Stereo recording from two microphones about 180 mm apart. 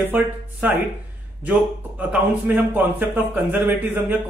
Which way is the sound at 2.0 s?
10° right (ahead or behind).